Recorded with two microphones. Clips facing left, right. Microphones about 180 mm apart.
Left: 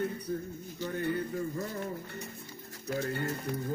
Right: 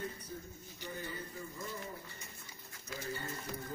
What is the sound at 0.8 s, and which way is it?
Pigeon, 60° left (ahead or behind).